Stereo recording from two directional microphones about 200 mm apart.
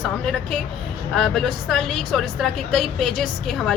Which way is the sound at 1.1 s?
Centre (ahead or behind).